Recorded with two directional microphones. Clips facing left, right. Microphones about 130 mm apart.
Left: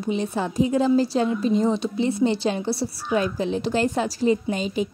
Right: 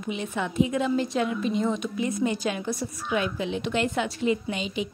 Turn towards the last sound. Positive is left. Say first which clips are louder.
# left 5 dB
turn(degrees=40)  # may be behind; listen again after turning